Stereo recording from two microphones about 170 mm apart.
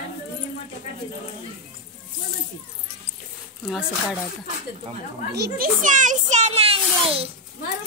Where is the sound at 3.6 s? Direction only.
5° right (ahead or behind).